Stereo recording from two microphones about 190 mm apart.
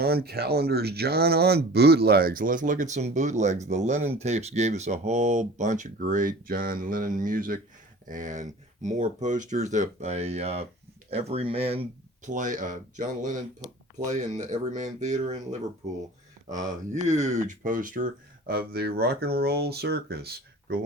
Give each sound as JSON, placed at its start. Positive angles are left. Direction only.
{"t": 0.0, "sound": "speech", "side_deg": -55}
{"t": 16.9, "sound": "speech", "side_deg": -40}